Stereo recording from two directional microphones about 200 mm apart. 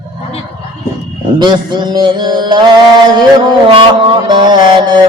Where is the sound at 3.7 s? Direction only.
20° right (ahead or behind).